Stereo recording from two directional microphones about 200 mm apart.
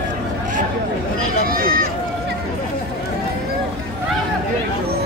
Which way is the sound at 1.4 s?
45° right (ahead or behind).